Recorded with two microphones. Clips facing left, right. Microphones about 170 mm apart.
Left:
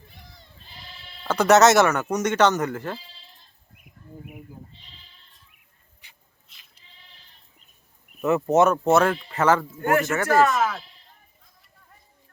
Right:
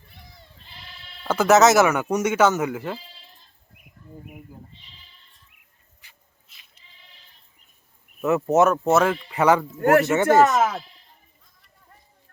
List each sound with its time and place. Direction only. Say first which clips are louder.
1.2 s speech: even; centre (ahead or behind)
6.5 s goat: even; centre (ahead or behind)
8.2 s speech: even; centre (ahead or behind)
9.3 s speech: right 3 dB; 15° right (ahead or behind)
9.8 s speech: right 6 dB; 70° right (ahead or behind)
10.2 s speech: right 3 dB; 20° right (ahead or behind)